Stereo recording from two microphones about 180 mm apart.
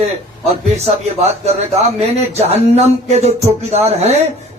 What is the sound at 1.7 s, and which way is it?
Speech, 35° right (ahead or behind).